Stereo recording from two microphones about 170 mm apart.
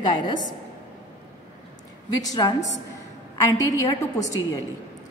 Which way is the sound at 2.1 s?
20° left (ahead or behind).